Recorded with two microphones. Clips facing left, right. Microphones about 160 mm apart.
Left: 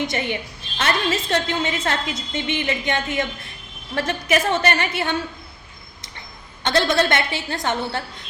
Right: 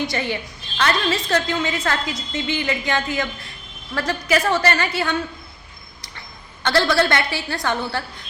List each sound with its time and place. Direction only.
0.0 s a woman's voice: 20° left (ahead or behind)
6.1 s a woman's voice: 20° left (ahead or behind)